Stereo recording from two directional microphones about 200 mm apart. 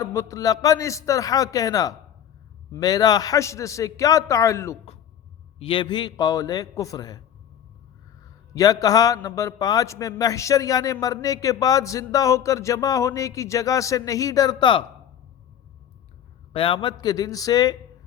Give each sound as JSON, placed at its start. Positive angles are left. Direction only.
{"t": 0.0, "sound": "a man's voice", "side_deg": 15}
{"t": 5.5, "sound": "a man's voice", "side_deg": 25}
{"t": 8.5, "sound": "a man's voice", "side_deg": 20}
{"t": 16.5, "sound": "a man's voice", "side_deg": 25}